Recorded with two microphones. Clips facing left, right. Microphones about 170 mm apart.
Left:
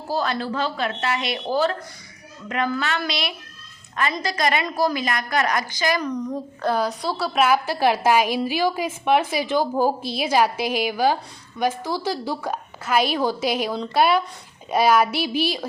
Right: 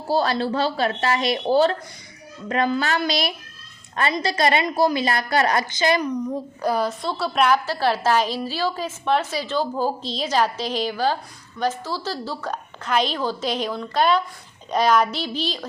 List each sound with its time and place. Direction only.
0.1 s a woman's voice: 30° right (ahead or behind)
6.6 s speech: 5° right (ahead or behind)